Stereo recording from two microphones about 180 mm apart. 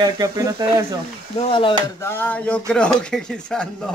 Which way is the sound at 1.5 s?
30° left (ahead or behind).